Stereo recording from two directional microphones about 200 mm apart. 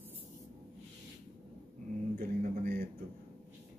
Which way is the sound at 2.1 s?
45° right (ahead or behind).